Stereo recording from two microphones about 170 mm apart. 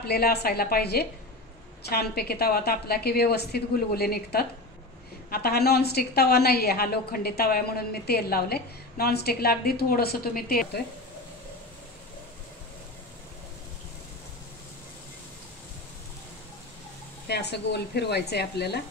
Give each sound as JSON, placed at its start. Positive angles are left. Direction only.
{"t": 0.0, "sound": "a woman's voice", "side_deg": 70}
{"t": 17.3, "sound": "a woman's voice", "side_deg": 75}